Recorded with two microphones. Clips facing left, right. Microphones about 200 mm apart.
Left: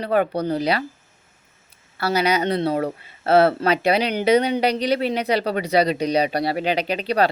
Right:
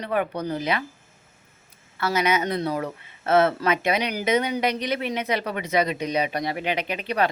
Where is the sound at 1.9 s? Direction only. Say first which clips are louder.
Left 3 dB; 35° left (ahead or behind).